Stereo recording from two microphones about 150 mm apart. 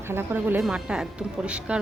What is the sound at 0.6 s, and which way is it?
Speech, 5° right (ahead or behind).